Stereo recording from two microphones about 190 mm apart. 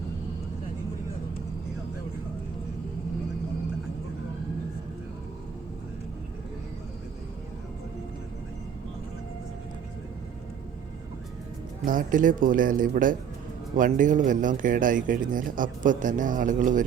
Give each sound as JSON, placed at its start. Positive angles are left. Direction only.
{"t": 11.9, "sound": "speech", "side_deg": -45}